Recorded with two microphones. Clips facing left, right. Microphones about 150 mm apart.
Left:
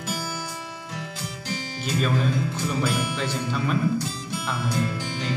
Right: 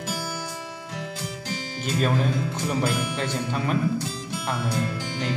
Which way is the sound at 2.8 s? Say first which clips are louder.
Left 1 dB; 60° right (ahead or behind).